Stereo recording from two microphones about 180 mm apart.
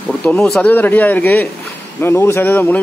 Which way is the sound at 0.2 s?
5° left (ahead or behind).